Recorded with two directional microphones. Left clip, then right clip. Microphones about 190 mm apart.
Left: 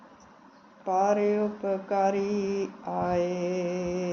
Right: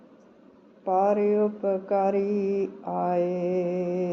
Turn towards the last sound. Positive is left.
turn(degrees=-20)  # may be behind; listen again after turning